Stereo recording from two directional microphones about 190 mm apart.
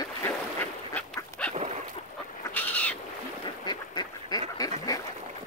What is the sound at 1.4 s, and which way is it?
Dog, 5° left (ahead or behind).